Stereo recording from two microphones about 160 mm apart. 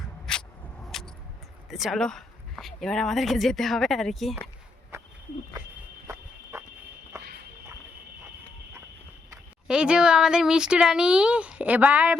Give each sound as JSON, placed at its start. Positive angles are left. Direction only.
{"t": 0.3, "sound": "a sound", "side_deg": 5}
{"t": 0.9, "sound": "vehicle", "side_deg": 0}
{"t": 1.7, "sound": "speech", "side_deg": 0}
{"t": 6.1, "sound": "a sound", "side_deg": -15}
{"t": 7.1, "sound": "run", "side_deg": -20}
{"t": 9.6, "sound": "speech", "side_deg": -5}